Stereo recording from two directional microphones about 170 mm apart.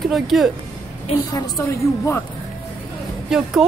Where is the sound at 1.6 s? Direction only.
15° left (ahead or behind).